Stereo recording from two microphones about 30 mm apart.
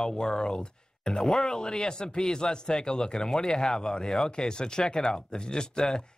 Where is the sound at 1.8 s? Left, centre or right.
Left.